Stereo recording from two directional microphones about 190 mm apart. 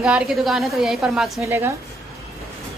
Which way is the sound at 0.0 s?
5° right (ahead or behind).